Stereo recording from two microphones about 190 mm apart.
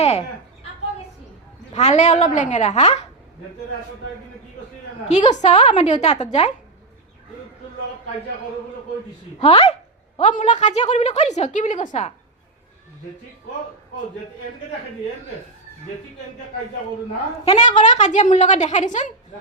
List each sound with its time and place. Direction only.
0.0 s a sound: 35° left (ahead or behind)
1.7 s a woman's voice: 35° left (ahead or behind)
5.0 s a woman's voice: 40° left (ahead or behind)
9.4 s a woman's voice: 30° left (ahead or behind)
17.4 s a woman's voice: 35° left (ahead or behind)